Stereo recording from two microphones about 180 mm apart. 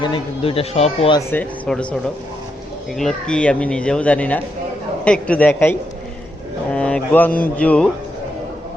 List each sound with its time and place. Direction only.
0.0 s speech: 30° left (ahead or behind)
1.3 s a woman's voice: 5° left (ahead or behind)
3.0 s a woman's voice: 5° left (ahead or behind)
6.7 s mantra: 5° left (ahead or behind)
7.5 s a woman's voice: 5° left (ahead or behind)